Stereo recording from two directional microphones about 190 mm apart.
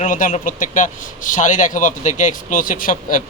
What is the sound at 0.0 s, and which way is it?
A man's voice, 45° left (ahead or behind).